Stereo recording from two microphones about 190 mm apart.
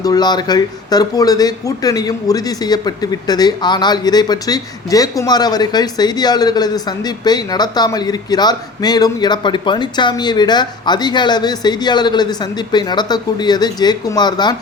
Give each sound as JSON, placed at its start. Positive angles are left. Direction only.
{"t": 0.0, "sound": "speech", "side_deg": 20}